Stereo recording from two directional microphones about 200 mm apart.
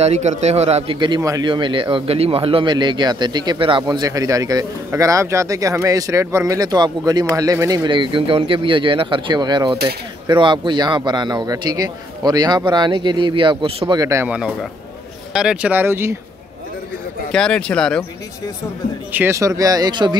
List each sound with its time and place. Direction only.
0.0 s a man's voice: 35° right (ahead or behind); by 16.2 s 10° right (ahead or behind)
17.3 s speech: 5° left (ahead or behind)
19.1 s speech: 15° right (ahead or behind)